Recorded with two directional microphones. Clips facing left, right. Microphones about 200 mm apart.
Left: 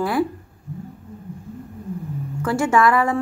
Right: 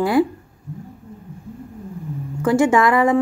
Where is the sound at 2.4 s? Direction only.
20° right (ahead or behind).